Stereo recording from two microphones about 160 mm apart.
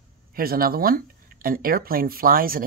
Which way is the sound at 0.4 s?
70° right (ahead or behind).